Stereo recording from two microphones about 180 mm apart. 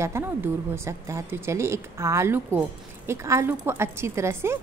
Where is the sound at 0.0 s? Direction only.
15° right (ahead or behind).